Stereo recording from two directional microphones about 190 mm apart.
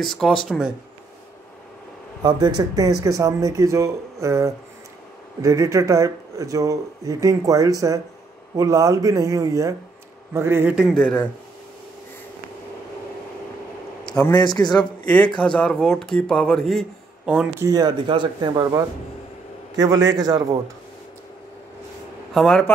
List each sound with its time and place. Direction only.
0.0 s speech: centre (ahead or behind)
2.2 s speech: 20° right (ahead or behind)
11.0 s speech: 5° left (ahead or behind)
14.3 s speech: 20° left (ahead or behind)
15.0 s speech: 5° left (ahead or behind)
17.6 s speech: 20° right (ahead or behind)
20.1 s speech: 20° right (ahead or behind)
22.3 s speech: 5° left (ahead or behind)